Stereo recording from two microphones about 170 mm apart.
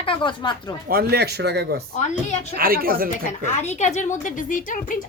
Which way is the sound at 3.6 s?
40° left (ahead or behind).